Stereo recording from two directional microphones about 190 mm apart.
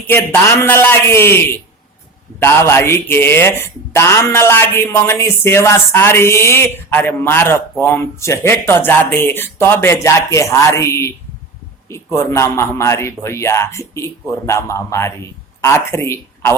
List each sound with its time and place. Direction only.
0.0 s speech: 10° left (ahead or behind)